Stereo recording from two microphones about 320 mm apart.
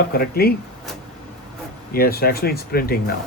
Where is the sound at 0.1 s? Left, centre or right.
Left.